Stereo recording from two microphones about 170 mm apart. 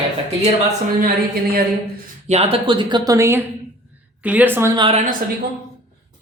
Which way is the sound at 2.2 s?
40° right (ahead or behind).